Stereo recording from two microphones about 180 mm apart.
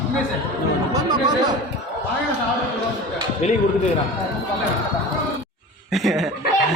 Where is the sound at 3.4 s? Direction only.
35° left (ahead or behind).